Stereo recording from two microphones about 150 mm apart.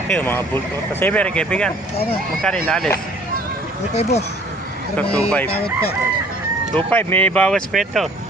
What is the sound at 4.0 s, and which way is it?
Speech, 45° left (ahead or behind).